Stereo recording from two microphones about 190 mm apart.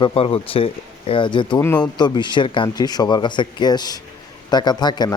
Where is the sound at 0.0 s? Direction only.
30° left (ahead or behind).